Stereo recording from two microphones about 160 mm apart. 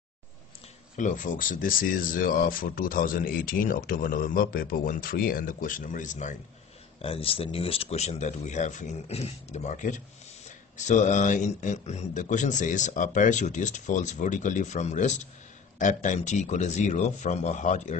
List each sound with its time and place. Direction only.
0.9 s speech: 55° left (ahead or behind)
7.0 s speech: 35° left (ahead or behind)